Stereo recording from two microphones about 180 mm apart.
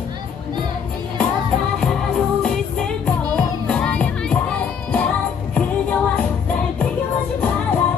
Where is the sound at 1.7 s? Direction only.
5° left (ahead or behind).